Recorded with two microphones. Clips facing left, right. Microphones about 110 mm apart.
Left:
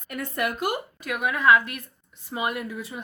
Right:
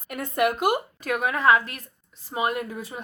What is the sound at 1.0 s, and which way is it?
Speech, 40° right (ahead or behind).